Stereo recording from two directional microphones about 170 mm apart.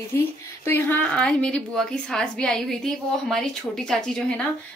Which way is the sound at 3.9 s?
5° left (ahead or behind).